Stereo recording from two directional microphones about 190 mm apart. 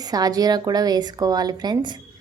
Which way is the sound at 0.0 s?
20° right (ahead or behind).